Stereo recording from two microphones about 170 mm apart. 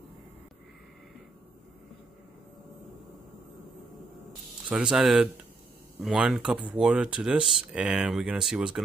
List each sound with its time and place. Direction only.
4.6 s speech: 5° right (ahead or behind)